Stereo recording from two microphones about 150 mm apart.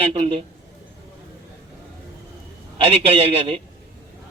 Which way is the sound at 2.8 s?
40° right (ahead or behind).